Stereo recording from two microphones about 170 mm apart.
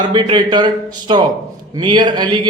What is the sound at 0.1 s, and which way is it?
A man's voice, 25° right (ahead or behind).